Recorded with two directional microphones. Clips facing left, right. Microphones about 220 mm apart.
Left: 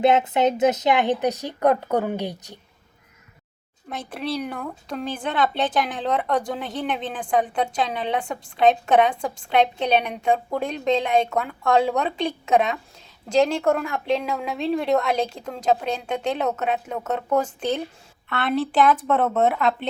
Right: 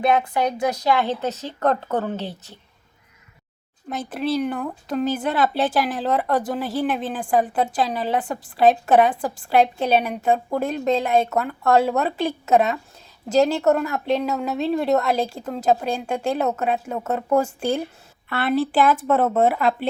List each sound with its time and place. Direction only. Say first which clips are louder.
0.0 s a woman's voice: left 2 dB; 20° left (ahead or behind)
3.8 s a woman's voice: right 4 dB; 5° right (ahead or behind)